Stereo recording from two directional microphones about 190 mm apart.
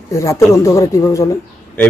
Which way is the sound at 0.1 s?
15° left (ahead or behind).